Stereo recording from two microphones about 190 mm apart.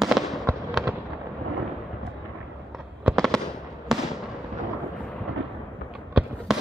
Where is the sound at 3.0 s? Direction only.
Centre (ahead or behind).